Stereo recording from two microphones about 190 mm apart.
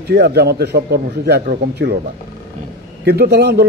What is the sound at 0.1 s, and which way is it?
A man's voice, 60° right (ahead or behind).